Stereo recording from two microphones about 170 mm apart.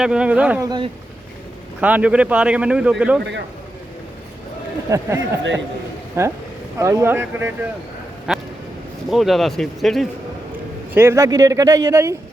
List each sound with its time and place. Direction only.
0.0 s a man's voice: 5° right (ahead or behind)
0.6 s speech: 25° right (ahead or behind)
1.8 s a man's voice: 10° right (ahead or behind)
4.9 s a man's voice: 20° right (ahead or behind); by 10.1 s centre (ahead or behind)
10.9 s speech: 15° right (ahead or behind)